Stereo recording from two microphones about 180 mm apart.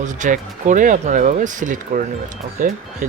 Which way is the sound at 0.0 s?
45° right (ahead or behind).